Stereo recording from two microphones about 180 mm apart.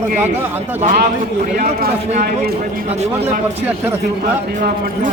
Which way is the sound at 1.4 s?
45° right (ahead or behind).